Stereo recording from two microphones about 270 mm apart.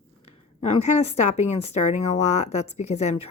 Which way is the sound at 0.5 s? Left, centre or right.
Left.